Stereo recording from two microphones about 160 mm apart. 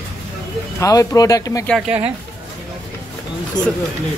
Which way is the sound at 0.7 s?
20° left (ahead or behind).